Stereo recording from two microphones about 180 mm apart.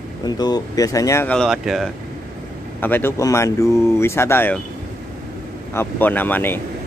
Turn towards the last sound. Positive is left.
turn(degrees=10)  # may be behind; listen again after turning